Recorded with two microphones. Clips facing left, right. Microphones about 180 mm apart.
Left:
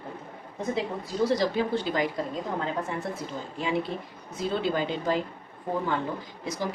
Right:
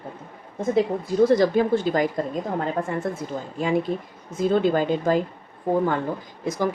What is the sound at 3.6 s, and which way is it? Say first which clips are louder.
A woman's voice: right 6 dB; 45° right (ahead or behind).